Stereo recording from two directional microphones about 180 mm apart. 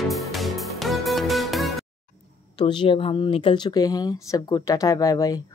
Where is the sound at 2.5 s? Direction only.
25° left (ahead or behind).